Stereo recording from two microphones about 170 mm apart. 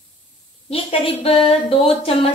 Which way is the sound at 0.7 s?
35° left (ahead or behind).